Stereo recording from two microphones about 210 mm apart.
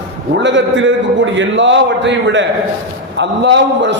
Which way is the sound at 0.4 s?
60° right (ahead or behind).